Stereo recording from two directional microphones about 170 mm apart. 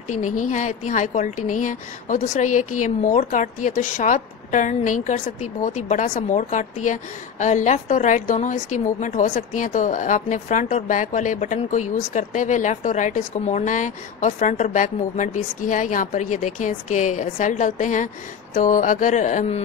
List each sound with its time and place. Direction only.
0.1 s a woman's voice: 45° left (ahead or behind)